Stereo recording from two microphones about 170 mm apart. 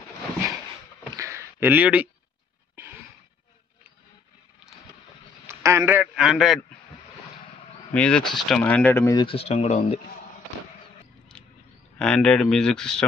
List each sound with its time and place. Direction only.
1.1 s a sound: 15° right (ahead or behind)
5.5 s a man's voice: 15° right (ahead or behind)
6.1 s speech: centre (ahead or behind)
7.9 s speech: 5° left (ahead or behind)
9.1 s speech: 30° left (ahead or behind)
11.3 s a sound: 5° left (ahead or behind)
12.0 s speech: 5° left (ahead or behind)